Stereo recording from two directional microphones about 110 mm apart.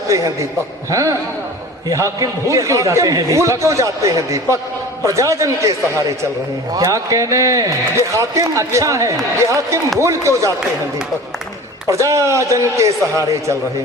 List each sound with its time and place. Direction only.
0.1 s a man's voice: 30° right (ahead or behind)
11.9 s a man's voice: 30° right (ahead or behind)